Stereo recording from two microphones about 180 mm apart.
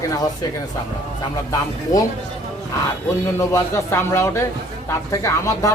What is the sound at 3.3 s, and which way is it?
Speech, 15° left (ahead or behind).